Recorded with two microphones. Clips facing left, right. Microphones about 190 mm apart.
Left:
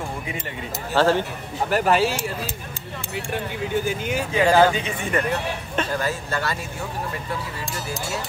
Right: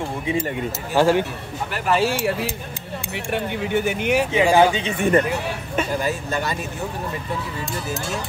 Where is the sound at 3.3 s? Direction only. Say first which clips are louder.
Right 4 dB; 65° right (ahead or behind).